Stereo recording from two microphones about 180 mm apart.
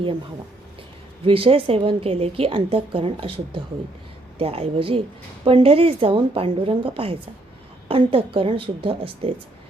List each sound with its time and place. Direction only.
1.2 s a woman's voice: 30° right (ahead or behind)